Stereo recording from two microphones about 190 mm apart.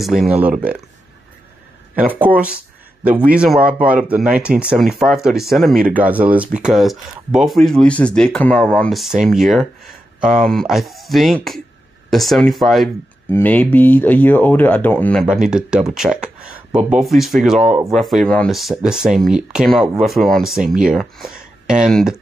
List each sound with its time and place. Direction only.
0.0 s speech: centre (ahead or behind)
2.0 s speech: 10° right (ahead or behind); by 15.2 s 10° left (ahead or behind)
15.2 s speech: 5° right (ahead or behind)